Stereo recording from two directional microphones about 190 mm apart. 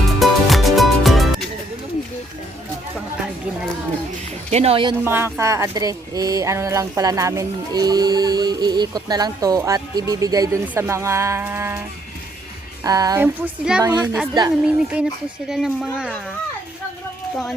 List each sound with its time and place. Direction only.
0.0 s music: centre (ahead or behind)
4.5 s speech: 30° right (ahead or behind)
5.0 s speech: 10° right (ahead or behind)
12.8 s speech: 20° right (ahead or behind); by 16.2 s 5° right (ahead or behind)